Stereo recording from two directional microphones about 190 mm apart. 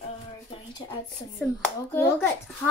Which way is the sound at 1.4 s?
10° left (ahead or behind).